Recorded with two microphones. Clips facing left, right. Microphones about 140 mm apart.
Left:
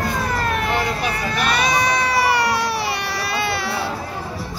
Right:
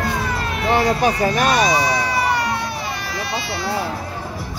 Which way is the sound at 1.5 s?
60° left (ahead or behind).